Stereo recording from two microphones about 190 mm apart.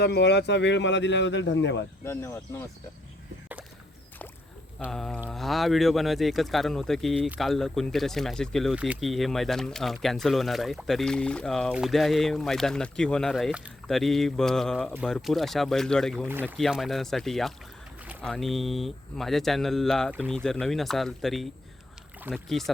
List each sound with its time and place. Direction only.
0.0 s a man's voice: 60° left (ahead or behind)
2.0 s speech: 15° left (ahead or behind)
4.9 s speech: 5° left (ahead or behind)
16.3 s speech: 10° right (ahead or behind)